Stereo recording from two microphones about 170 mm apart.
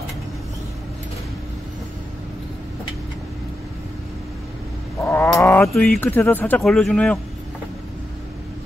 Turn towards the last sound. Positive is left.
turn(degrees=5)  # may be behind; listen again after turning